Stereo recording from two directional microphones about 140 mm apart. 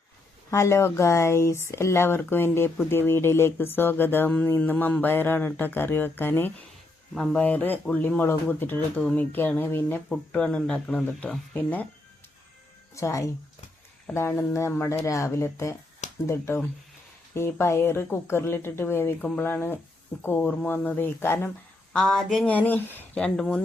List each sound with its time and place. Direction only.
0.5 s speech: 20° left (ahead or behind)
13.0 s speech: 20° left (ahead or behind)
21.9 s speech: centre (ahead or behind)
22.4 s speech: 10° left (ahead or behind)